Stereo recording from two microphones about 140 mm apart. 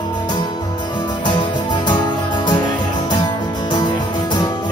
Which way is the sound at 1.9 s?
30° left (ahead or behind).